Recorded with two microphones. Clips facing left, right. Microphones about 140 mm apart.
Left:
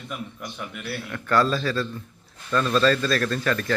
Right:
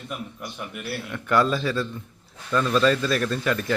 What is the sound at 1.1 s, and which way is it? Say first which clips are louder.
A man's voice: even; 15° right (ahead or behind).